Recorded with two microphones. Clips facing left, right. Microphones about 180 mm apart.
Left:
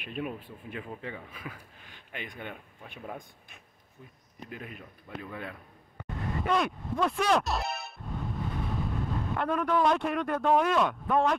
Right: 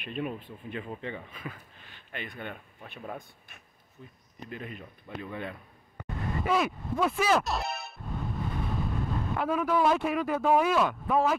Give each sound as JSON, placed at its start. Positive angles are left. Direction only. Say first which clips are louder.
{"t": 0.0, "sound": "speech", "louder": "right 1 dB", "side_deg": 10}
{"t": 6.0, "sound": "music", "louder": "right 1 dB", "side_deg": 0}